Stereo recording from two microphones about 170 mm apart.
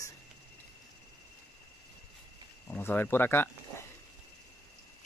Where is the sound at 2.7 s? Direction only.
10° left (ahead or behind).